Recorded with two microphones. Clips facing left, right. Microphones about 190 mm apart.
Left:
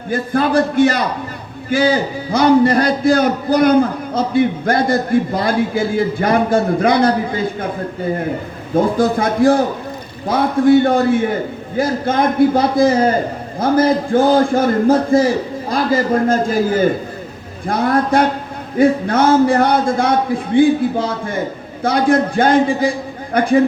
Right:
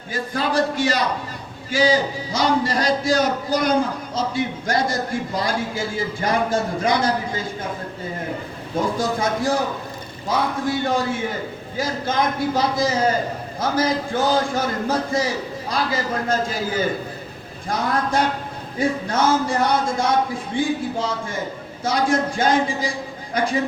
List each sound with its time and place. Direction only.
0.1 s a man's voice: 55° left (ahead or behind)
8.7 s a man's voice: 55° left (ahead or behind)
21.8 s a man's voice: 60° left (ahead or behind)